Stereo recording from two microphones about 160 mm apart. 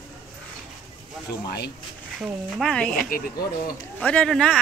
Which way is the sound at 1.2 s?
90° left.